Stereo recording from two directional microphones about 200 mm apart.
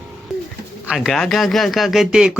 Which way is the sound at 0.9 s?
Centre (ahead or behind).